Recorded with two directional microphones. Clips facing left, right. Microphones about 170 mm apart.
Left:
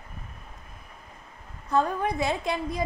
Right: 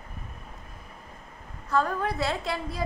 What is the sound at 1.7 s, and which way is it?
A woman's voice, 20° left (ahead or behind).